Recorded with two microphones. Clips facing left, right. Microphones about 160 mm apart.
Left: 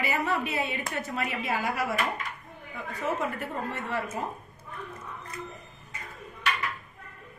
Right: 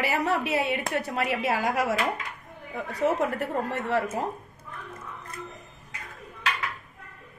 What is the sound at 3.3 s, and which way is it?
Speech, 80° right.